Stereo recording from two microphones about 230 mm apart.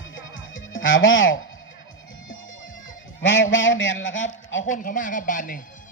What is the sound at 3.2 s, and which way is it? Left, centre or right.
Goose, left.